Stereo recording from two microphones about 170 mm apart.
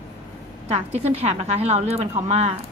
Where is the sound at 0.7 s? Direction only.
40° right (ahead or behind).